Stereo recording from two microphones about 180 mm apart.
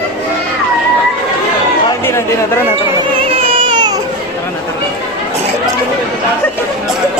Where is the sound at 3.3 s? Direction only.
30° right (ahead or behind).